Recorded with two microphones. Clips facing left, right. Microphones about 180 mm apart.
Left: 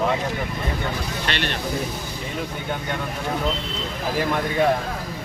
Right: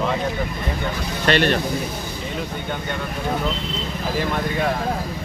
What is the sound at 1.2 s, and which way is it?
Speech, 45° right (ahead or behind).